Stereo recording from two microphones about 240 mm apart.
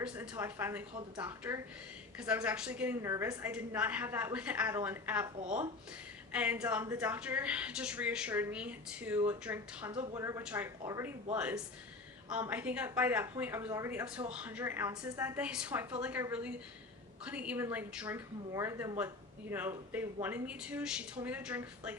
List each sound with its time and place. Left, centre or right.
0.0 s speech: centre
5.4 s speech: right
6.3 s speech: centre